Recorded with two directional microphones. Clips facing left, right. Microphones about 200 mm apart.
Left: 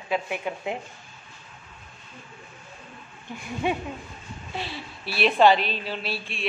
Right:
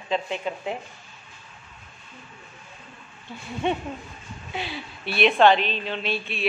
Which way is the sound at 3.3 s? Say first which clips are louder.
Left 2 dB; 15° left (ahead or behind).